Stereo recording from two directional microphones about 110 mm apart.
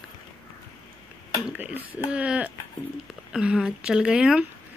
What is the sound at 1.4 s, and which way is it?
Speech, 15° right (ahead or behind).